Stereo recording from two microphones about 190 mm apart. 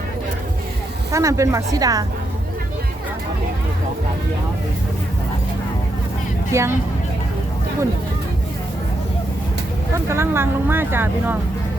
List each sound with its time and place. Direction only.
1.1 s speech: 15° right (ahead or behind)
6.5 s speech: 15° right (ahead or behind)
10.1 s speech: 15° right (ahead or behind)